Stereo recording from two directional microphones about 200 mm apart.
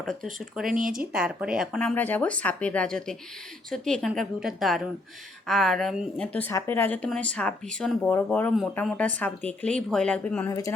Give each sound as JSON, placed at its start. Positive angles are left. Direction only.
{"t": 0.0, "sound": "speech", "side_deg": 0}
{"t": 0.7, "sound": "speech", "side_deg": -45}
{"t": 1.1, "sound": "speech", "side_deg": -5}